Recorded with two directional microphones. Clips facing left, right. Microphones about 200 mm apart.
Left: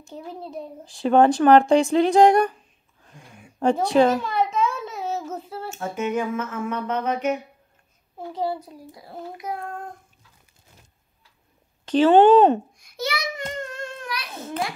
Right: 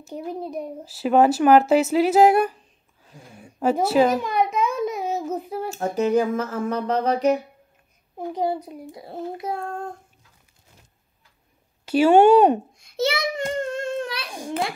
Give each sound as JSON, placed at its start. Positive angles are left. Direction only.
{"t": 0.1, "sound": "speech", "side_deg": -15}
{"t": 0.8, "sound": "a woman's voice", "side_deg": -5}
{"t": 3.5, "sound": "a sound", "side_deg": -5}
{"t": 5.9, "sound": "music", "side_deg": -35}
{"t": 8.3, "sound": "a child's voice", "side_deg": -20}
{"t": 11.8, "sound": "speech", "side_deg": -10}
{"t": 12.7, "sound": "a sound", "side_deg": -25}
{"t": 13.6, "sound": "humming", "side_deg": -25}
{"t": 14.3, "sound": "a sound", "side_deg": -15}